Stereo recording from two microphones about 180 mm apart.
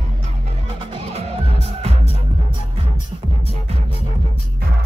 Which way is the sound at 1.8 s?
35° right (ahead or behind).